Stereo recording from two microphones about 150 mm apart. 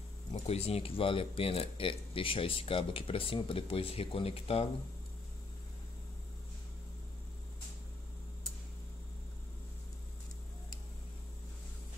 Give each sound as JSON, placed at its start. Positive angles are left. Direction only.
{"t": 0.3, "sound": "speech", "side_deg": 45}